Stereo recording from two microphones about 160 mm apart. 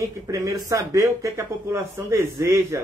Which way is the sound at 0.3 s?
20° right (ahead or behind).